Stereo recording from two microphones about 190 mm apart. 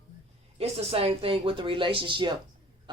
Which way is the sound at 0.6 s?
30° right (ahead or behind).